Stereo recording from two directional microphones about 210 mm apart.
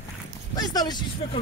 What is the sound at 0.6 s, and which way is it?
Speech, 20° left (ahead or behind).